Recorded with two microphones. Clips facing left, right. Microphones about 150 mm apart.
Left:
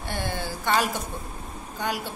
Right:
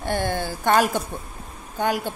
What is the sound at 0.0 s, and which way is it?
A woman's voice, 45° right (ahead or behind).